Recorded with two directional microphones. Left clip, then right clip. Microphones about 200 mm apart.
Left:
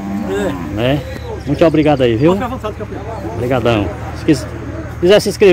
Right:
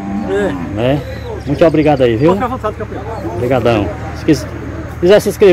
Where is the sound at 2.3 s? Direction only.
55° left (ahead or behind).